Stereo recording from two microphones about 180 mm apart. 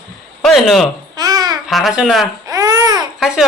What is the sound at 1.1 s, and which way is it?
Babbling, 20° right (ahead or behind).